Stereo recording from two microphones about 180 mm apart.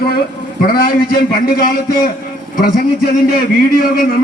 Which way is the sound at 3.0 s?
55° left (ahead or behind).